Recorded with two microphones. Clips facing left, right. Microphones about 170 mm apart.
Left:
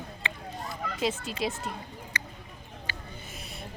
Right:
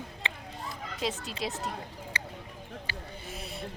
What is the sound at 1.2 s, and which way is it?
Speech, centre (ahead or behind).